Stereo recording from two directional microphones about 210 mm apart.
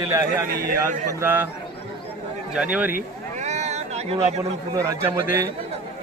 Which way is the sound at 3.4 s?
35° right (ahead or behind).